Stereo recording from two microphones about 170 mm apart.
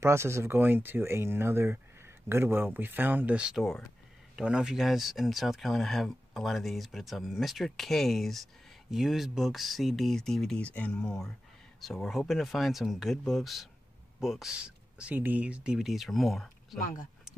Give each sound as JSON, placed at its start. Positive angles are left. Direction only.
{"t": 0.0, "sound": "speech", "side_deg": -15}
{"t": 16.8, "sound": "speech", "side_deg": 50}